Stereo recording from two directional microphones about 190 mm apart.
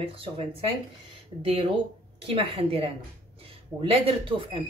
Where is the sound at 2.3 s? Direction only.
30° right (ahead or behind).